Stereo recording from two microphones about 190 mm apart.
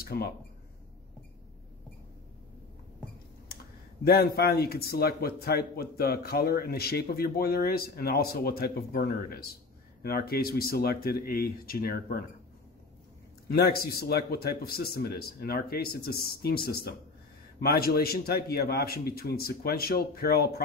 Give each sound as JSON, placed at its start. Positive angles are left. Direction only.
{"t": 0.0, "sound": "speech", "side_deg": 55}
{"t": 4.0, "sound": "a man's voice", "side_deg": 55}
{"t": 13.5, "sound": "a man's voice", "side_deg": 55}